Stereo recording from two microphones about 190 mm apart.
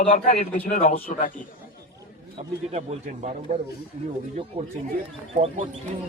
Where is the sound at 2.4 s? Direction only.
40° right (ahead or behind).